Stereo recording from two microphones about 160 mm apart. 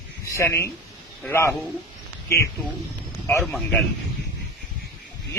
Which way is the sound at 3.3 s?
10° left (ahead or behind).